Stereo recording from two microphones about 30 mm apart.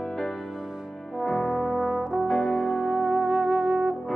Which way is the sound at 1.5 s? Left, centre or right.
Centre.